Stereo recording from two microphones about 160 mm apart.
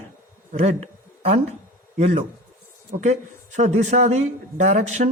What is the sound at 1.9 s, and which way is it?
Speech, 45° right (ahead or behind).